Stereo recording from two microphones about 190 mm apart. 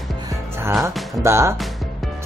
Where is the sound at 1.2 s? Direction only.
15° right (ahead or behind).